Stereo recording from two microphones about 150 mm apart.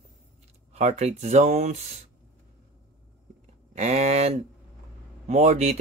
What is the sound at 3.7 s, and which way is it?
Speech, 50° right (ahead or behind).